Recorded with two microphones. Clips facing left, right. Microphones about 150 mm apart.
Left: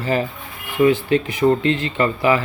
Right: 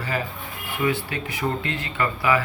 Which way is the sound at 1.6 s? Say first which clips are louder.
Left 8 dB; 25° left (ahead or behind).